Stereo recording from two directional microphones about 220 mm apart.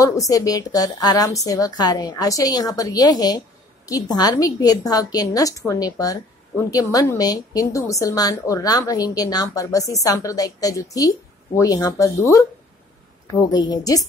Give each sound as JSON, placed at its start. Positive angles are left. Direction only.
{"t": 0.3, "sound": "a woman's voice", "side_deg": 15}
{"t": 13.5, "sound": "a woman's voice", "side_deg": 20}